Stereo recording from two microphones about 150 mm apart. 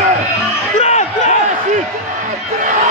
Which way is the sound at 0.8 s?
50° left (ahead or behind).